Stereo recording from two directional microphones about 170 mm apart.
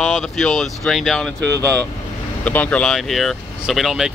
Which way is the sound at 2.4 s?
10° left (ahead or behind).